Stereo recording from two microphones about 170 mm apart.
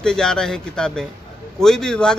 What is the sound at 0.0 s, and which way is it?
Speech, 5° left (ahead or behind).